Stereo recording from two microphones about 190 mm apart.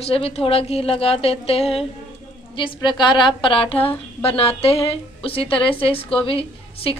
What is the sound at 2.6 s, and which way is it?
A woman's voice, 25° left (ahead or behind).